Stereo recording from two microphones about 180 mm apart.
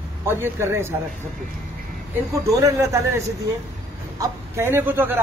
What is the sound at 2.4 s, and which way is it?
Speech, 20° right (ahead or behind).